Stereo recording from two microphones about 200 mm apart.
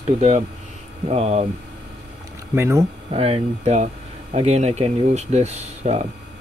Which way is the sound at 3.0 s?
30° right (ahead or behind).